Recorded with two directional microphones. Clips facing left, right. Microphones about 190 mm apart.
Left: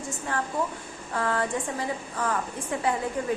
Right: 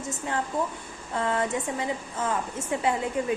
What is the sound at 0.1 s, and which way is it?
A woman's voice, 20° right (ahead or behind).